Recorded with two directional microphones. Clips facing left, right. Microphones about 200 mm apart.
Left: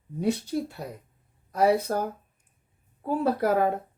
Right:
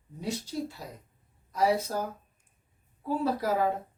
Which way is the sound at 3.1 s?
60° left (ahead or behind).